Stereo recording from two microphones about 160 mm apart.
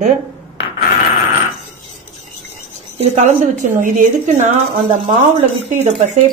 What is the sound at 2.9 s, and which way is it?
A woman's voice, 45° right (ahead or behind).